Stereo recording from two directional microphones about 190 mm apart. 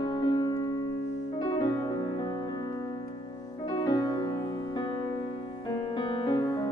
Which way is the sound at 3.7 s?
20° left (ahead or behind).